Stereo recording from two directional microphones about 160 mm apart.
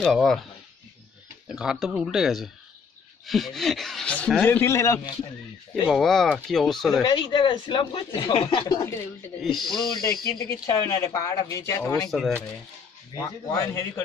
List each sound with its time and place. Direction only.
0.0 s speech: centre (ahead or behind)
1.5 s speech: 5° right (ahead or behind); by 5.1 s 20° left (ahead or behind)
5.9 s speech: centre (ahead or behind)
6.9 s speech: 25° left (ahead or behind)
9.4 s speech: centre (ahead or behind)
10.2 s speech: 20° left (ahead or behind)
12.1 s speech: centre (ahead or behind)
13.1 s speech: 20° left (ahead or behind)